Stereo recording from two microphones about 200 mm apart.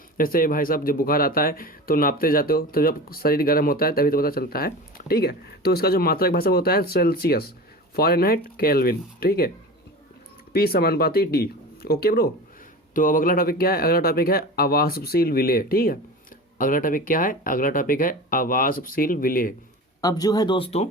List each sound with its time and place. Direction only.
0.2 s speech: 45° left (ahead or behind)
10.5 s speech: 50° left (ahead or behind)
20.0 s speech: 20° left (ahead or behind)